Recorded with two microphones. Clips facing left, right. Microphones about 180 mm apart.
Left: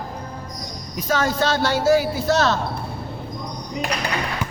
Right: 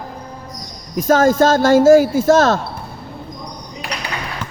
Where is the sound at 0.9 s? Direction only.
45° right (ahead or behind).